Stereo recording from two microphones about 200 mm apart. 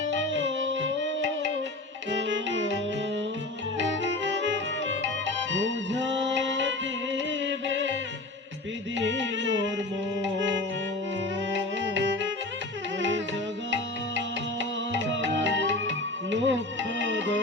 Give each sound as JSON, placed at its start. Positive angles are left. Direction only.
{"t": 0.1, "sound": "music", "side_deg": -65}
{"t": 3.8, "sound": "music", "side_deg": -65}
{"t": 9.0, "sound": "music", "side_deg": -65}
{"t": 13.0, "sound": "music", "side_deg": -70}